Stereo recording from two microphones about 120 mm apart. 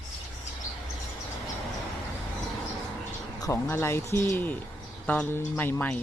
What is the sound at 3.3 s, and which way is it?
Speech, 25° left (ahead or behind).